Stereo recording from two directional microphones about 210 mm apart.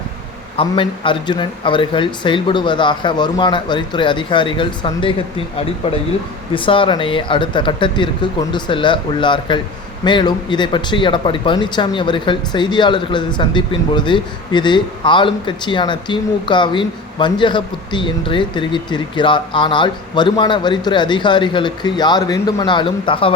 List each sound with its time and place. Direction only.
0.5 s speech: 25° left (ahead or behind)